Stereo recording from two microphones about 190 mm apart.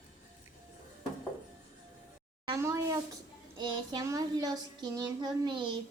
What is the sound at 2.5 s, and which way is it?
Speech, 15° right (ahead or behind).